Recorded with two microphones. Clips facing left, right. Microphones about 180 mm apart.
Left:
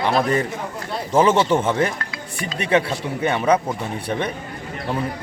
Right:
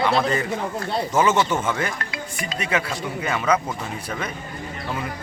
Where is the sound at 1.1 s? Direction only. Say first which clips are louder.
Left 5 dB; 30° left (ahead or behind).